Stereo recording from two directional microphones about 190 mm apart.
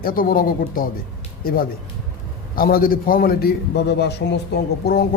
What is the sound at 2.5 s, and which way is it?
Speech, 50° left (ahead or behind).